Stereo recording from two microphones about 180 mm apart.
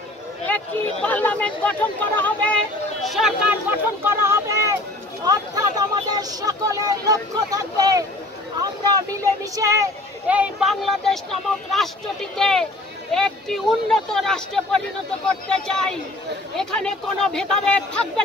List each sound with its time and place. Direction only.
1.0 s speech: 10° left (ahead or behind)
4.0 s speech: 15° right (ahead or behind)
10.2 s speech: 5° right (ahead or behind)